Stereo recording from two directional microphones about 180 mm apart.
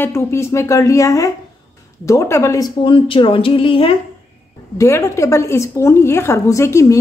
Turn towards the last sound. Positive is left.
turn(degrees=15)  # may be behind; listen again after turning